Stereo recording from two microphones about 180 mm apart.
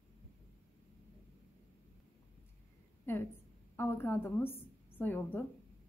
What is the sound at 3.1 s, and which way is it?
A woman's voice, 15° left (ahead or behind).